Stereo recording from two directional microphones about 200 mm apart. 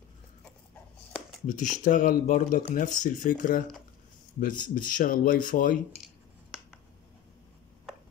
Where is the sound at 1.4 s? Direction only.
40° left (ahead or behind).